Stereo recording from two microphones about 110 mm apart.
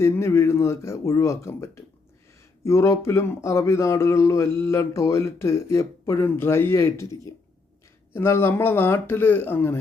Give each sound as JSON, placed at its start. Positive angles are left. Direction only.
{"t": 0.0, "sound": "speech", "side_deg": 25}